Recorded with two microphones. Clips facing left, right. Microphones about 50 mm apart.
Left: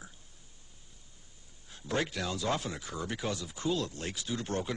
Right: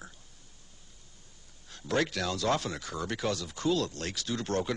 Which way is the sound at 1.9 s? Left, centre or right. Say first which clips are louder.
Right 3 dB; left.